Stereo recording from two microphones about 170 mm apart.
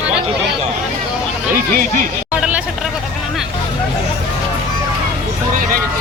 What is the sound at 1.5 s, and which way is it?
Speech, 55° right (ahead or behind).